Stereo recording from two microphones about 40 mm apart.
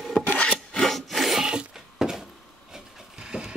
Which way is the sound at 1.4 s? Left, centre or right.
Right.